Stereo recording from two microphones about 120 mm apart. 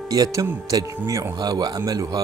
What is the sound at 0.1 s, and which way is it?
Speech, 30° right (ahead or behind).